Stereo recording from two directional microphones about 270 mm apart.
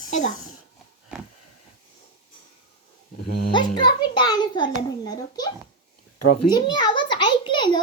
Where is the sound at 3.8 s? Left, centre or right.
Centre.